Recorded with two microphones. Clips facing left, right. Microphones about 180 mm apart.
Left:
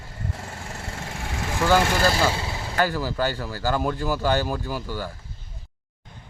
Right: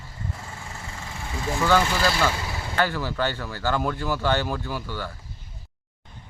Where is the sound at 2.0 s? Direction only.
35° left (ahead or behind).